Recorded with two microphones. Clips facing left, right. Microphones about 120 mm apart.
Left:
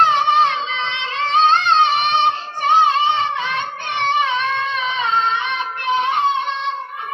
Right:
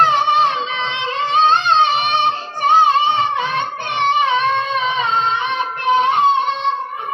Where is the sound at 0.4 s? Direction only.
15° right (ahead or behind).